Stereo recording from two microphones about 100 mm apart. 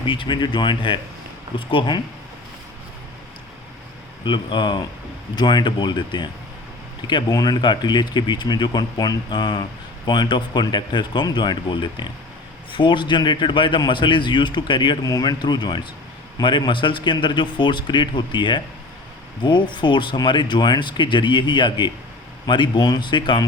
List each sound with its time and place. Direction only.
0.0 s a man's voice: 55° left (ahead or behind)
4.2 s a man's voice: 50° left (ahead or behind)
7.3 s a man's voice: 40° left (ahead or behind)